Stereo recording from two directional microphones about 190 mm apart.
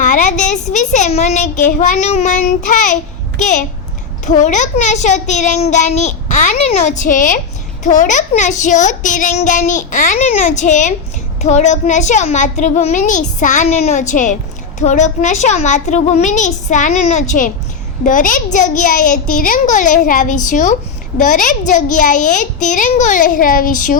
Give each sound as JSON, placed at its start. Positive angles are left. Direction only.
{"t": 0.0, "sound": "a child's voice", "side_deg": 40}